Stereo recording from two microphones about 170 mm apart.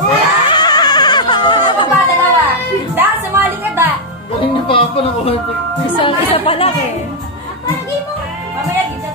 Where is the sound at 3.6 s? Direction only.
10° right (ahead or behind).